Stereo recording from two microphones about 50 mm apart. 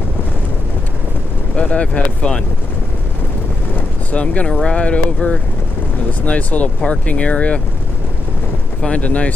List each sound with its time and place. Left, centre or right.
1.6 s speech: left
4.1 s speech: left
8.8 s speech: left